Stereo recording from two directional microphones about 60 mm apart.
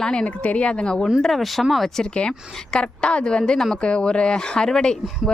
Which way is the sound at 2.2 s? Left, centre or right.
Centre.